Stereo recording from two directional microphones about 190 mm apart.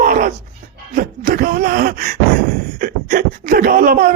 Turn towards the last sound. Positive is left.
turn(degrees=-50)  # may be behind; listen again after turning